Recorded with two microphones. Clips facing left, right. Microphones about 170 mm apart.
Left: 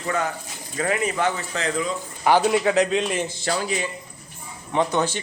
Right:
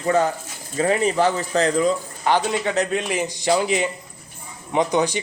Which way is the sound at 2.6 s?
Centre (ahead or behind).